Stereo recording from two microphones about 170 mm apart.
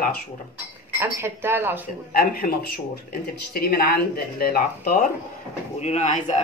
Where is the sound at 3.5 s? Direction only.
60° left (ahead or behind).